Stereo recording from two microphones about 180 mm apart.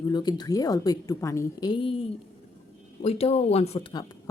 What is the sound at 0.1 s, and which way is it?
A woman's voice, 25° left (ahead or behind).